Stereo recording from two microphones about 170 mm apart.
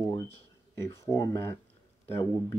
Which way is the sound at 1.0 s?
20° left (ahead or behind).